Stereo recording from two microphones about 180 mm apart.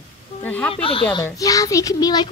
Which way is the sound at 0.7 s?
30° left (ahead or behind).